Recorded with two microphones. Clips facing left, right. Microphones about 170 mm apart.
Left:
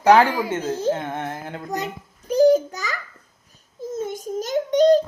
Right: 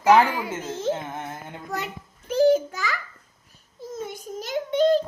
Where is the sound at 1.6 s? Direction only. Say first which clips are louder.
Left 2 dB; 40° left (ahead or behind).